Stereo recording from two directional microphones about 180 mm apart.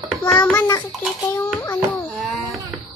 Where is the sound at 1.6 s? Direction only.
10° left (ahead or behind).